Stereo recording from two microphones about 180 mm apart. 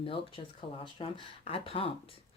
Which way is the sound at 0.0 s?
30° left (ahead or behind).